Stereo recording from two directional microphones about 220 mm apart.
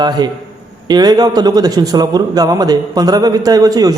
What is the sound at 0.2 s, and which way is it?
Speech, 20° right (ahead or behind).